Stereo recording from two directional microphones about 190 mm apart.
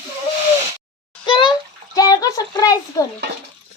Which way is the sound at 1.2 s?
25° left (ahead or behind).